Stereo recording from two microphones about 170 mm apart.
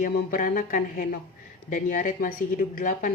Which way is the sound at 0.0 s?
50° left (ahead or behind).